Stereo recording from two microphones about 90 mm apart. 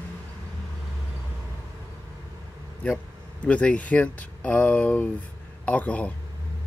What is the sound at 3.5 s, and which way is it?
Speech, 15° left (ahead or behind).